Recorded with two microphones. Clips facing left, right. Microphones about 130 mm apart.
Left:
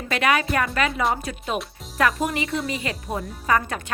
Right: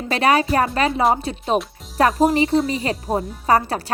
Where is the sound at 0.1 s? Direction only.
35° right (ahead or behind).